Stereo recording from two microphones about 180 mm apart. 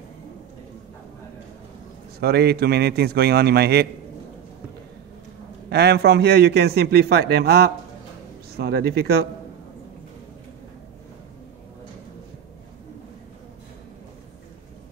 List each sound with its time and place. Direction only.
2.1 s a man's voice: 65° right (ahead or behind)
5.7 s a man's voice: 65° right (ahead or behind)